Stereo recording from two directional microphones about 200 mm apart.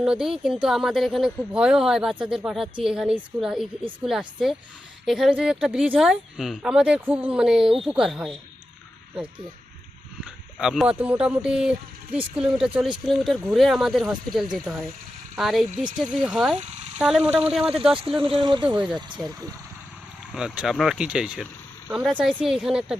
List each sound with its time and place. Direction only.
0.0 s speech: 5° right (ahead or behind)
10.2 s speech: 5° right (ahead or behind)
18.2 s speech: 25° right (ahead or behind)
18.6 s speech: 5° right (ahead or behind)
20.3 s speech: 5° right (ahead or behind)